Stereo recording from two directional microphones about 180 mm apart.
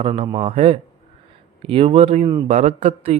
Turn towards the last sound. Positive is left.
turn(degrees=-40)  # may be behind; listen again after turning